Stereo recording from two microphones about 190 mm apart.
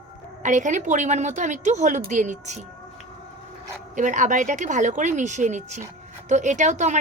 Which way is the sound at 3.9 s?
40° right (ahead or behind).